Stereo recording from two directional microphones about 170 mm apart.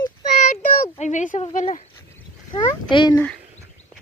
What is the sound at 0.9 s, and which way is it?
Speech, 45° left (ahead or behind).